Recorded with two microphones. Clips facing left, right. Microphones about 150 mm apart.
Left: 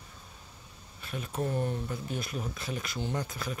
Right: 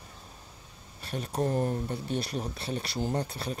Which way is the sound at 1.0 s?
35° right (ahead or behind).